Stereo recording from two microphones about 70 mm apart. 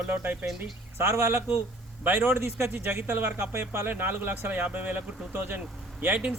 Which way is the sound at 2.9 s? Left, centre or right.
Right.